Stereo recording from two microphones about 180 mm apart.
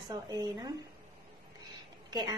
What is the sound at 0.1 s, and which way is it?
Speech, 20° right (ahead or behind).